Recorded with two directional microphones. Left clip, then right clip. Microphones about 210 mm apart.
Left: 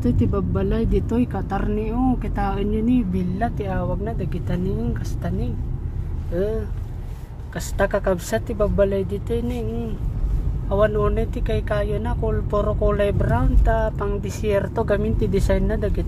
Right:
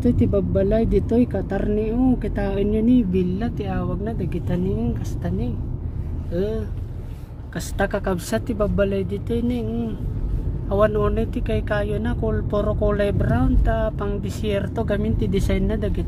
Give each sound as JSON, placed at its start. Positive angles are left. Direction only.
{"t": 0.0, "sound": "speech", "side_deg": 5}
{"t": 6.3, "sound": "speech", "side_deg": 5}